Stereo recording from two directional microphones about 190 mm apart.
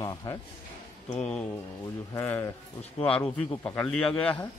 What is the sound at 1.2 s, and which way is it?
A man's voice, 5° left (ahead or behind).